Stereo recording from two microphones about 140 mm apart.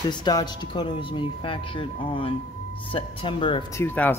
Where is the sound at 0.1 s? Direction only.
30° left (ahead or behind).